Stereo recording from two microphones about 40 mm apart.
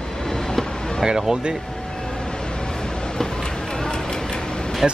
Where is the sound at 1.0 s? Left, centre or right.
Centre.